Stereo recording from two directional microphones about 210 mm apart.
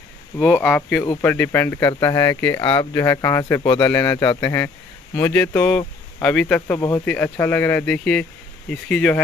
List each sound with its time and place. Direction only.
0.4 s speech: 5° left (ahead or behind)